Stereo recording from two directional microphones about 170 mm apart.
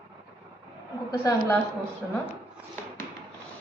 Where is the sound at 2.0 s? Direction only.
10° right (ahead or behind).